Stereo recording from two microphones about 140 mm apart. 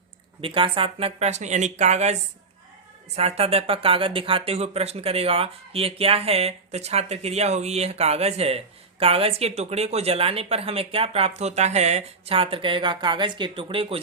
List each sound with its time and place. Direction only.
0.4 s speech: 40° right (ahead or behind); by 2.1 s 55° right (ahead or behind)
3.2 s speech: 45° right (ahead or behind)